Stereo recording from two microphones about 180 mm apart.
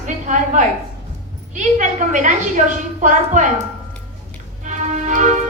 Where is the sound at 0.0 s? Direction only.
45° right (ahead or behind).